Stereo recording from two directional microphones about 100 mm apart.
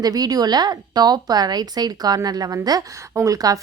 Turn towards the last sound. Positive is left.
turn(degrees=-35)  # may be behind; listen again after turning